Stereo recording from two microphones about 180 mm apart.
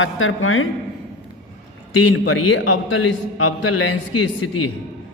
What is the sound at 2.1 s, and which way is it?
A man's voice, 90° left.